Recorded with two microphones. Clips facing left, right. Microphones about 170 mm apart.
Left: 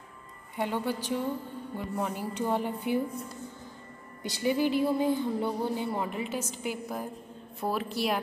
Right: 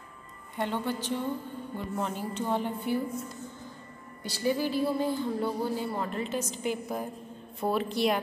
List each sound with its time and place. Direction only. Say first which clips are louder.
0.6 s speech: even; 10° left (ahead or behind)
4.2 s a woman's voice: left 1 dB; 15° left (ahead or behind)